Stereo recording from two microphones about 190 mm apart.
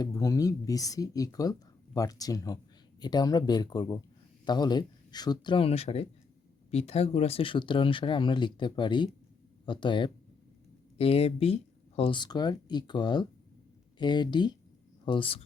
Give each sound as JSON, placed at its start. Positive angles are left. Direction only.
{"t": 0.0, "sound": "speech", "side_deg": 20}